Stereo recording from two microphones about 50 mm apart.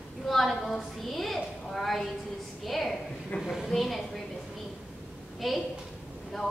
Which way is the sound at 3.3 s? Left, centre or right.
Left.